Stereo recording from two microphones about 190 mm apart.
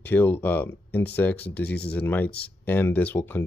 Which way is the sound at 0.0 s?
10° left (ahead or behind).